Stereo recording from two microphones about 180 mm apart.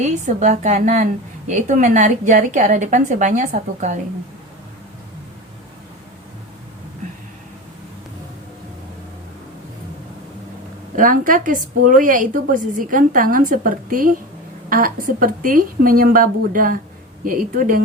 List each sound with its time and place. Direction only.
0.0 s a woman's voice: 40° right (ahead or behind)
10.9 s a woman's voice: 50° right (ahead or behind)